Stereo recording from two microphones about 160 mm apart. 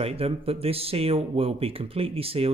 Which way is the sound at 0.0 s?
35° right (ahead or behind).